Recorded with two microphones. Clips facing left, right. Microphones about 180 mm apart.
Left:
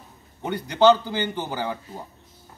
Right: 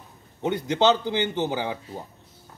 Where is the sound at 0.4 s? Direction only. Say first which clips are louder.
Left 2 dB; 20° right (ahead or behind).